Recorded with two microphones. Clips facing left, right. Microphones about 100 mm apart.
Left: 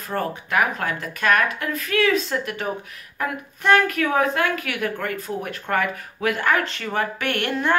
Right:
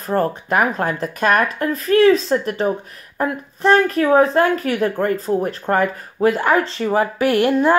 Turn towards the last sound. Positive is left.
turn(degrees=-30)  # may be behind; listen again after turning